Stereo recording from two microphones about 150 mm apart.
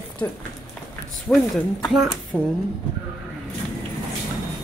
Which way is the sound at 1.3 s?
10° left (ahead or behind).